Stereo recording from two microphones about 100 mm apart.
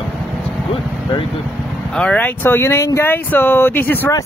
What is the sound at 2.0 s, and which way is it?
Speech, 10° left (ahead or behind).